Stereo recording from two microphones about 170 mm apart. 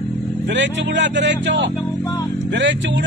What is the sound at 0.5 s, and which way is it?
Speech, 90° right.